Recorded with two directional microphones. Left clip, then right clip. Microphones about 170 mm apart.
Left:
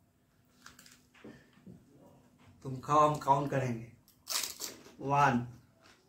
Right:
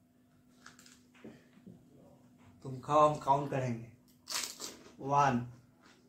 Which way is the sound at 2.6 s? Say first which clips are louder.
Even; centre (ahead or behind).